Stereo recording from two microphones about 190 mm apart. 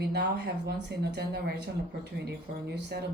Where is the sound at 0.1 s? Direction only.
60° right (ahead or behind).